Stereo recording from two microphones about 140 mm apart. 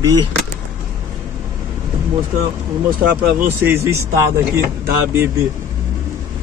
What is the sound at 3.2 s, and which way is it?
Speech, 15° right (ahead or behind).